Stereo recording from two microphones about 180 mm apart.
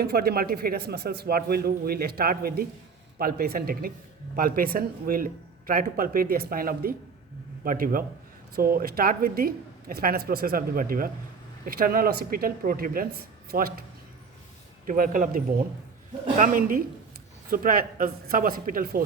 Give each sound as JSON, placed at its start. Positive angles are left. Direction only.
{"t": 0.0, "sound": "a man's voice", "side_deg": -60}
{"t": 14.8, "sound": "speech", "side_deg": -50}